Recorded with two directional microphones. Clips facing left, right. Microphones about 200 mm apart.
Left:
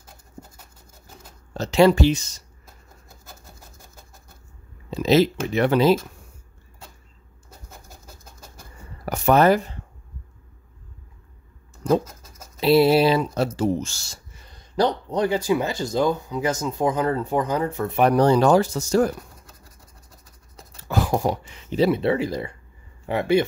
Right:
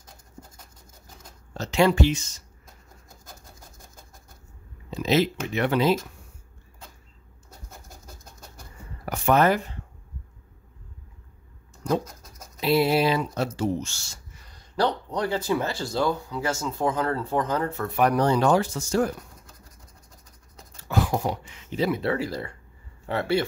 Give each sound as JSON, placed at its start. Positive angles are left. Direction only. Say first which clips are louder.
{"t": 1.5, "sound": "speech", "louder": "left 5 dB", "side_deg": 35}
{"t": 4.9, "sound": "speech", "louder": "left 5 dB", "side_deg": 35}
{"t": 9.0, "sound": "speech", "louder": "left 4 dB", "side_deg": 40}
{"t": 12.0, "sound": "bird", "louder": "left 1 dB", "side_deg": 5}
{"t": 12.5, "sound": "speech", "louder": "left 5 dB", "side_deg": 30}
{"t": 20.9, "sound": "speech", "louder": "left 3 dB", "side_deg": 40}